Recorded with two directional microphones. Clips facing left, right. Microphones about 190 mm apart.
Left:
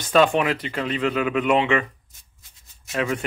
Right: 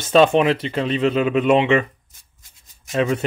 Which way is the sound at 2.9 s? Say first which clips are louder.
Right 5 dB; 20° right (ahead or behind).